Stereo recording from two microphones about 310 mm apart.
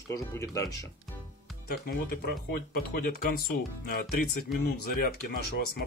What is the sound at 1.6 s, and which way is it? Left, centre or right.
Speech, left.